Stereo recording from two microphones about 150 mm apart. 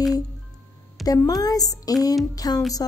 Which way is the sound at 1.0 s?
25° left (ahead or behind).